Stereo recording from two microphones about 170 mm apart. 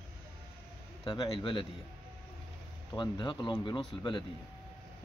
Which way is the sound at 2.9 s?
25° left (ahead or behind).